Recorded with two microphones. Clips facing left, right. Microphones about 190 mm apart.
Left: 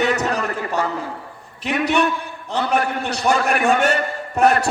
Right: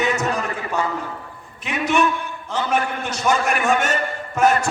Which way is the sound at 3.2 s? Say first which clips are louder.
Left 2 dB; 35° left (ahead or behind).